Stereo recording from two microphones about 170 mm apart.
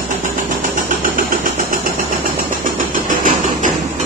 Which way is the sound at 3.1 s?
50° right (ahead or behind).